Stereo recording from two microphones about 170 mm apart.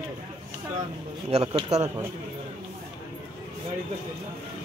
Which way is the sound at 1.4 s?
30° right (ahead or behind).